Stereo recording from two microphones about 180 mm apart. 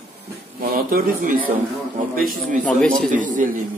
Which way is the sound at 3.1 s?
45° right (ahead or behind).